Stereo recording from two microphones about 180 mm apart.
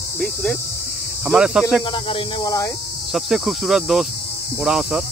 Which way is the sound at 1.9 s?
25° left (ahead or behind).